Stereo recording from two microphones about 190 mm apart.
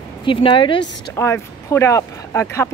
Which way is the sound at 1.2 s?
15° left (ahead or behind).